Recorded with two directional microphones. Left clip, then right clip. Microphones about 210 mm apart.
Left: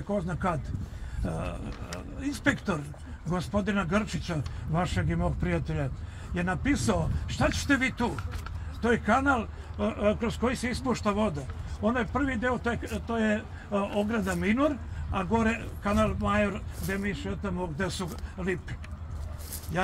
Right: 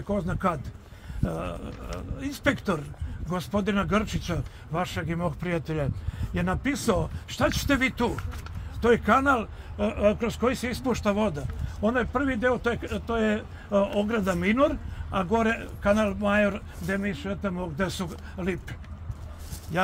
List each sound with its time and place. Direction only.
0.1 s a man's voice: 55° right (ahead or behind)